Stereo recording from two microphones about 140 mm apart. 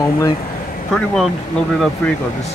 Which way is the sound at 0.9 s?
5° left (ahead or behind).